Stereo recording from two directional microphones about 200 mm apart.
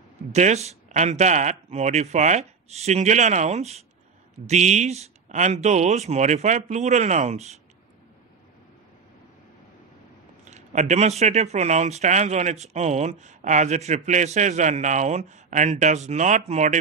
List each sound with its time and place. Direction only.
0.3 s speech: 35° right (ahead or behind)
10.4 s speech: 35° right (ahead or behind)